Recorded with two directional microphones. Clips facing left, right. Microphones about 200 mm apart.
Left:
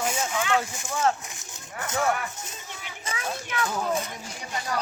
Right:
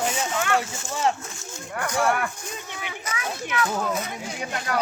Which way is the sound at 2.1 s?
55° right (ahead or behind).